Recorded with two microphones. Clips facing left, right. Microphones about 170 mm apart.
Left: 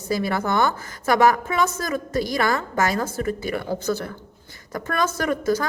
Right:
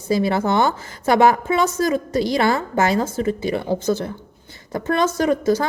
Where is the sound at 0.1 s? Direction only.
25° right (ahead or behind).